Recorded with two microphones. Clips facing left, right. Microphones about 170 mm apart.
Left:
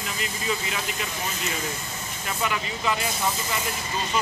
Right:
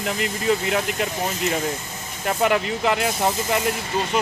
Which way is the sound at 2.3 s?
60° right (ahead or behind).